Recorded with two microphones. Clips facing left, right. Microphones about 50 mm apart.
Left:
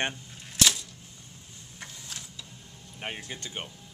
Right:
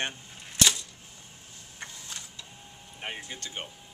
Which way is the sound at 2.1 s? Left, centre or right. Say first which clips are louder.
Even; centre.